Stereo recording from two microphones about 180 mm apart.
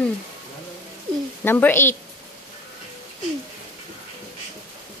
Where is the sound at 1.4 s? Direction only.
10° left (ahead or behind).